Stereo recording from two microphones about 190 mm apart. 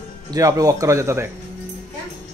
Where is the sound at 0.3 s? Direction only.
20° right (ahead or behind).